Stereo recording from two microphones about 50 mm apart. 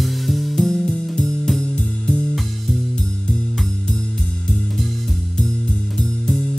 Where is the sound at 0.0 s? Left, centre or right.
Centre.